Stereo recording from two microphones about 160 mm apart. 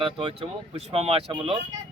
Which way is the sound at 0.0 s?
35° right (ahead or behind).